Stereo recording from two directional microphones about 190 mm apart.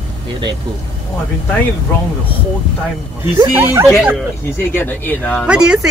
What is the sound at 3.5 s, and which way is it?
Speech, 15° right (ahead or behind).